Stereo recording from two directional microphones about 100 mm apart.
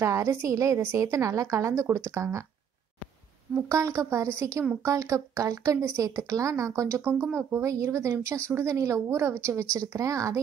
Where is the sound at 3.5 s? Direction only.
30° right (ahead or behind).